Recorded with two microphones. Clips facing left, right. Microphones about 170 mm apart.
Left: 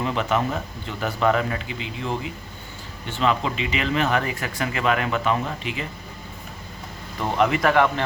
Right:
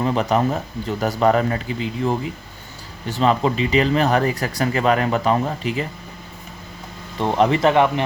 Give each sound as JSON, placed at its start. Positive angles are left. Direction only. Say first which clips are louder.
{"t": 0.0, "sound": "speech", "louder": "right 4 dB", "side_deg": -35}
{"t": 7.2, "sound": "speech", "louder": "right 4 dB", "side_deg": -30}